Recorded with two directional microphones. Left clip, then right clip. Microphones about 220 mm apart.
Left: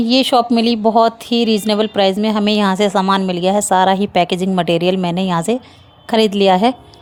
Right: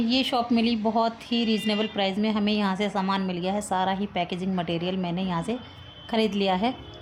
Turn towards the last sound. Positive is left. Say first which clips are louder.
# left 12 dB
turn(degrees=40)  # may be behind; listen again after turning